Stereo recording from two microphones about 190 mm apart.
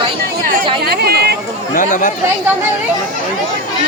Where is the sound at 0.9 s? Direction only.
55° right (ahead or behind).